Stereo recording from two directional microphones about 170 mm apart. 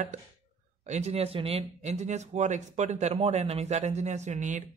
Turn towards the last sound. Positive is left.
turn(degrees=-45)  # may be behind; listen again after turning